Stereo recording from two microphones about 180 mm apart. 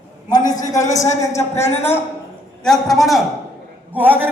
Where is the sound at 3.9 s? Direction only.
10° right (ahead or behind).